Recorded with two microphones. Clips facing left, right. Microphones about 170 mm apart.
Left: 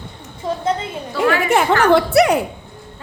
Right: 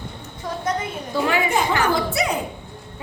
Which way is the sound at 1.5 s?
70° left (ahead or behind).